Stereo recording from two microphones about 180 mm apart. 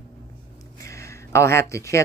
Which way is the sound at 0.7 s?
15° left (ahead or behind).